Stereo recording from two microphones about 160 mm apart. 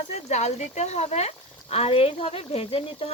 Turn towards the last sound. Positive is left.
turn(degrees=35)  # may be behind; listen again after turning